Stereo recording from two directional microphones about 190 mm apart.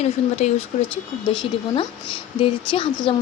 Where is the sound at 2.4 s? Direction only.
25° left (ahead or behind).